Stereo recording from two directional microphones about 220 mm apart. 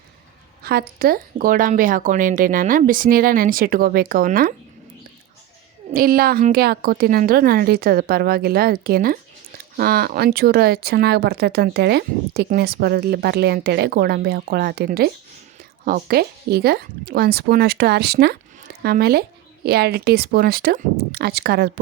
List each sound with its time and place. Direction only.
0.6 s a woman's voice: 45° right (ahead or behind)
5.9 s speech: 40° right (ahead or behind)